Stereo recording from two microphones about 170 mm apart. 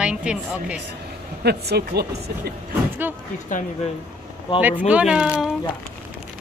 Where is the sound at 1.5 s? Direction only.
70° right (ahead or behind).